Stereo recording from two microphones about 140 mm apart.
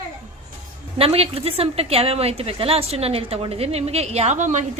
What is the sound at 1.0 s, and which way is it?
A woman's voice, 45° right (ahead or behind).